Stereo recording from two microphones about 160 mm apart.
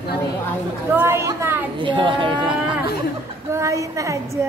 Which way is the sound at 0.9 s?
15° right (ahead or behind).